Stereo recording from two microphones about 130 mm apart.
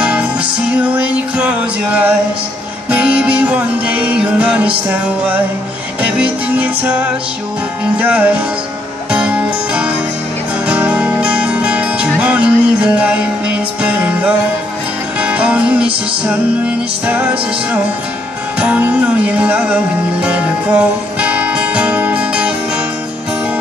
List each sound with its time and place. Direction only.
0.0 s music: 10° right (ahead or behind)